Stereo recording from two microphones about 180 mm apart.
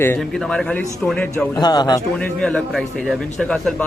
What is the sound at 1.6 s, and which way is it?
Speech, 25° left (ahead or behind).